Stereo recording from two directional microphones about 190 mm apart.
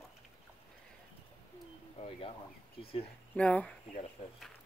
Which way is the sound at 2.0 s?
30° left (ahead or behind).